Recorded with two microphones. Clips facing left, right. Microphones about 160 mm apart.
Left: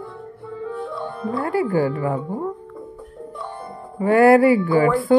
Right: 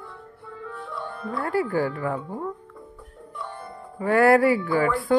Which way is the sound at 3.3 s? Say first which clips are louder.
Left 2 dB; 30° left (ahead or behind).